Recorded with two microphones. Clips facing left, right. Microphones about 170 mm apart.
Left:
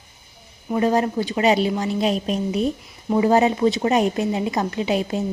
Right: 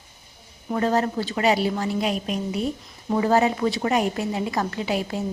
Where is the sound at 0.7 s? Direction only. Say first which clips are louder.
Left 3 dB; 15° left (ahead or behind).